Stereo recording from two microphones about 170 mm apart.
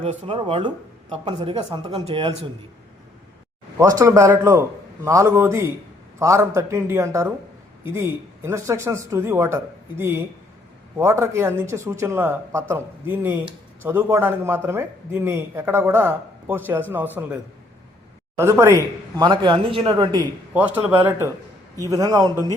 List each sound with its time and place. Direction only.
0.0 s a man's voice: 35° right (ahead or behind)
3.8 s a man's voice: 20° right (ahead or behind)
18.3 s a man's voice: 15° right (ahead or behind)
19.2 s a man's voice: 25° right (ahead or behind)
20.5 s a man's voice: 10° right (ahead or behind)